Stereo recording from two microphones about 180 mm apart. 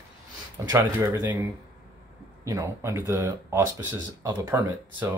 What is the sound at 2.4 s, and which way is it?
Speech, 15° right (ahead or behind).